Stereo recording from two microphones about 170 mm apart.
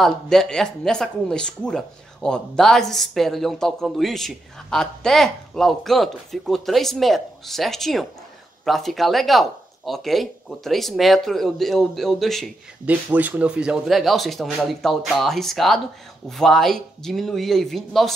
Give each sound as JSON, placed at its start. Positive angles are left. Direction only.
{"t": 0.0, "sound": "speech", "side_deg": 0}